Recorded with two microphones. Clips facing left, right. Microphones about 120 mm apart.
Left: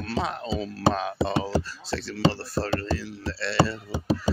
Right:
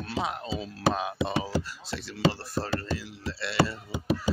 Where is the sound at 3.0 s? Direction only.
20° right (ahead or behind).